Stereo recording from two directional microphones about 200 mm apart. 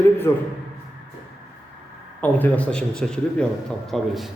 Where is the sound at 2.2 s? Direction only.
10° left (ahead or behind).